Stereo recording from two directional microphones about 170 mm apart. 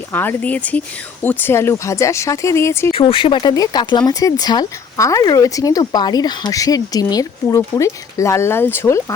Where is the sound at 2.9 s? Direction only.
30° left (ahead or behind).